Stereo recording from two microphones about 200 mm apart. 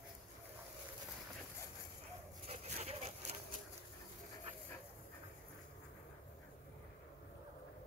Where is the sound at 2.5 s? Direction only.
35° right (ahead or behind).